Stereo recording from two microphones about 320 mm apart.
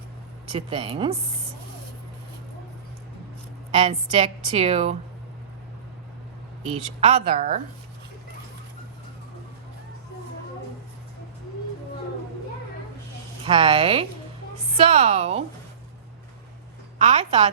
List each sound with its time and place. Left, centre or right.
0.5 s a woman's voice: centre
3.8 s a woman's voice: right
7.0 s a woman's voice: centre
13.4 s a woman's voice: centre
17.0 s a woman's voice: centre